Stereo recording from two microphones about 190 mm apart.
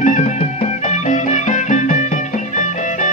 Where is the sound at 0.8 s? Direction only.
40° left (ahead or behind).